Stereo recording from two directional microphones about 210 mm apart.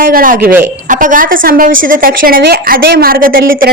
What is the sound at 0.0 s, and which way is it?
A woman's voice, 40° right (ahead or behind).